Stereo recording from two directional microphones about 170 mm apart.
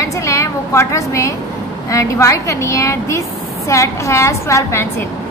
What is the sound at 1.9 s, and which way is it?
A woman's voice, 20° left (ahead or behind).